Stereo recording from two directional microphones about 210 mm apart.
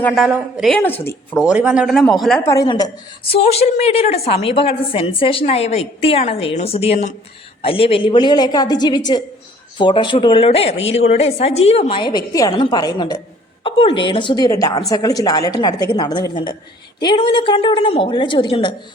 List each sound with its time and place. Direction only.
0.0 s a woman's voice: centre (ahead or behind)
2.5 s a woman's voice: 15° left (ahead or behind)
3.3 s a woman's voice: 30° left (ahead or behind)